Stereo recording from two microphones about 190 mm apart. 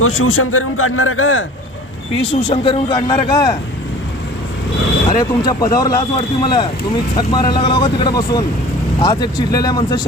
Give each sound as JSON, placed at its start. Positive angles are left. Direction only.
{"t": 0.0, "sound": "a man's voice", "side_deg": 90}
{"t": 2.3, "sound": "speech", "side_deg": 30}
{"t": 5.0, "sound": "speech", "side_deg": 20}